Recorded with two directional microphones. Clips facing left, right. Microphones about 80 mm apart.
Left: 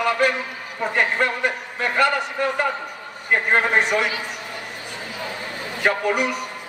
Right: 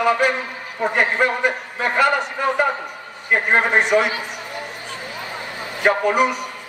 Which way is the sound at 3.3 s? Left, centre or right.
Centre.